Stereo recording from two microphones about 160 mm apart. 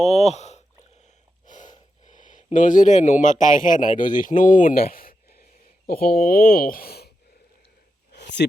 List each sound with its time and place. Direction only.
0.0 s speech: 40° left (ahead or behind)
1.5 s snort: 50° left (ahead or behind)
2.0 s speech: 50° left (ahead or behind); by 7.1 s 75° left (ahead or behind)
8.1 s a sound: 90° left